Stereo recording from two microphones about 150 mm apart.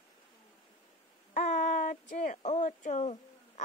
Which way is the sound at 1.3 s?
55° left (ahead or behind).